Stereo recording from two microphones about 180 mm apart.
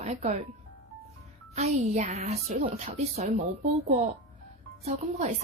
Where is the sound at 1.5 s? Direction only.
40° right (ahead or behind).